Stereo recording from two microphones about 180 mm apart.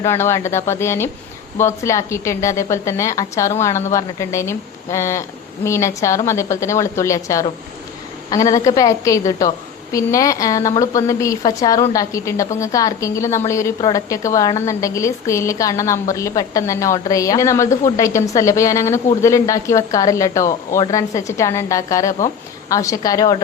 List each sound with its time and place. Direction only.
0.0 s a woman's voice: 15° left (ahead or behind)